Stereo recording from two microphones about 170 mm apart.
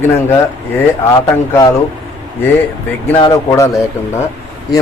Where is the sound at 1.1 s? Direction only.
20° left (ahead or behind).